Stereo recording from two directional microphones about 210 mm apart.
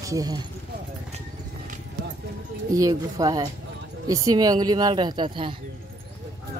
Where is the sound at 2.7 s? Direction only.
15° right (ahead or behind).